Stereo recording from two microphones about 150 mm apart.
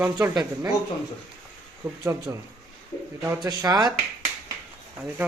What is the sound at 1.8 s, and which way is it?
A man's voice, 20° right (ahead or behind).